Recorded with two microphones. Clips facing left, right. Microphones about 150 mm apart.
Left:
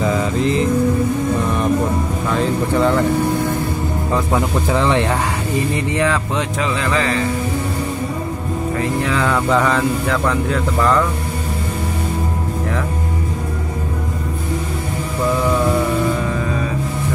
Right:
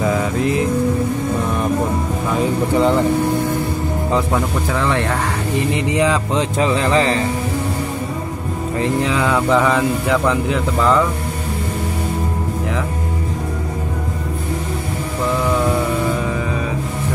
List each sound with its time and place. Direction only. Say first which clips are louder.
0.0 s vehicle: even; 5° right (ahead or behind)
2.3 s speech: right 1 dB; 15° right (ahead or behind)
4.6 s speech: left 2 dB; 20° left (ahead or behind)
5.9 s speech: right 2 dB; 15° right (ahead or behind)
6.3 s speech: right 3 dB; 30° right (ahead or behind)
8.7 s speech: right 3 dB; 15° right (ahead or behind)